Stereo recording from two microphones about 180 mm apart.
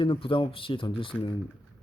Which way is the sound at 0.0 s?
30° left (ahead or behind).